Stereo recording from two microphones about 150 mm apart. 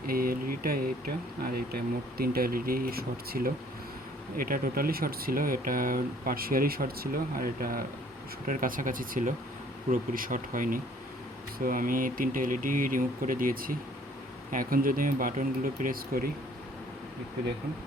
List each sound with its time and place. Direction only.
0.1 s a sound: 75° right (ahead or behind)
1.4 s speech: 90° right
4.4 s speech: 70° right (ahead or behind)